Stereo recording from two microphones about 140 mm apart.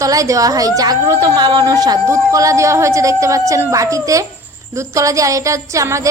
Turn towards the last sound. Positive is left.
turn(degrees=-20)  # may be behind; listen again after turning